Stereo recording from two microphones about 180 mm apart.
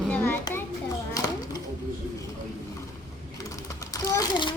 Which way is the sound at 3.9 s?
20° left (ahead or behind).